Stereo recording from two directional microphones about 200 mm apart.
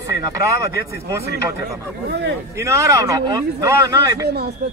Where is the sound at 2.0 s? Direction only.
55° right (ahead or behind).